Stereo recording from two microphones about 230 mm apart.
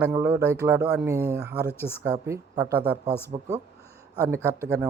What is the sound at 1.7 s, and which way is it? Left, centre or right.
Speech, centre.